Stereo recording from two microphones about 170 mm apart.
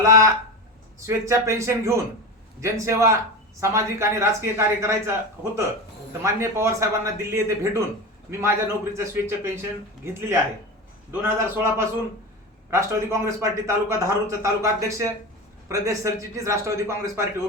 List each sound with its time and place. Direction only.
0.0 s a man's voice: 20° right (ahead or behind)